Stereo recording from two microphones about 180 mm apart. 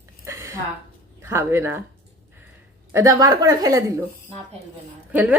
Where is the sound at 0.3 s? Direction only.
15° right (ahead or behind).